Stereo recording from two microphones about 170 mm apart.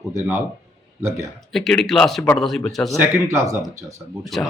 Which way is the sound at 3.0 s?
15° right (ahead or behind).